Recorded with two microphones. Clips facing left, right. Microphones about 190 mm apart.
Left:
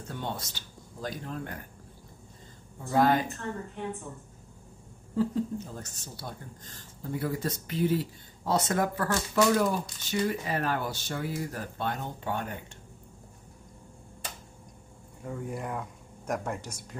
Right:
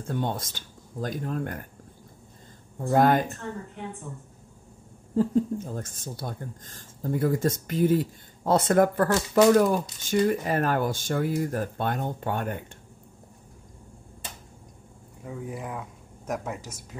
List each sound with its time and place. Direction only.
0.1 s speech: 50° right (ahead or behind)
2.8 s speech: 50° right (ahead or behind)
5.1 s speech: 45° right (ahead or behind)
15.2 s speech: centre (ahead or behind)